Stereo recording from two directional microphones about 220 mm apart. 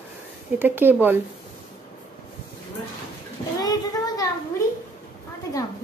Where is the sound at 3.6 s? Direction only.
15° left (ahead or behind).